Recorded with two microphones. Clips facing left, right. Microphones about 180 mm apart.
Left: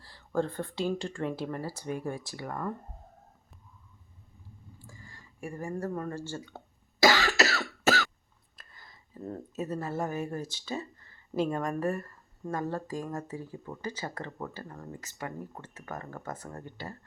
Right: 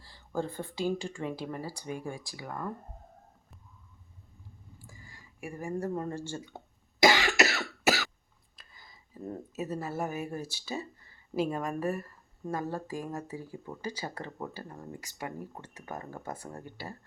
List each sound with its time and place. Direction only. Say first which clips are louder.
0.0 s speech: left 4 dB; centre (ahead or behind)
4.9 s speech: left 2 dB; 10° right (ahead or behind)
7.0 s cough: even; 15° right (ahead or behind)
8.5 s a sound: left 1 dB; 5° right (ahead or behind)
9.2 s speech: left 1 dB; 10° right (ahead or behind)